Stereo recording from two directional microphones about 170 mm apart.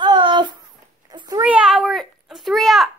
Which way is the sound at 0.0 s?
25° right (ahead or behind).